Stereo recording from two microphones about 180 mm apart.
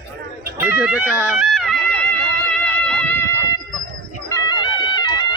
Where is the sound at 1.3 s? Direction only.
Centre (ahead or behind).